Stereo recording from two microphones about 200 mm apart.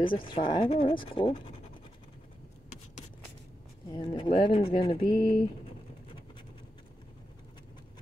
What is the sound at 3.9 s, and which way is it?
Speech, 25° left (ahead or behind).